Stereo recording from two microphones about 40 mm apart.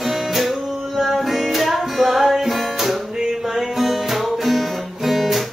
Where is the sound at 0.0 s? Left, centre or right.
Centre.